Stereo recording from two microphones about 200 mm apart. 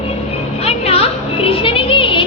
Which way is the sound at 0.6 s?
30° left (ahead or behind).